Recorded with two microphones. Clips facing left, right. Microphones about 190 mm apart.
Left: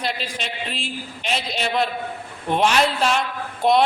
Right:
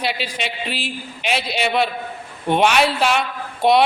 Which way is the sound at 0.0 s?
5° right (ahead or behind).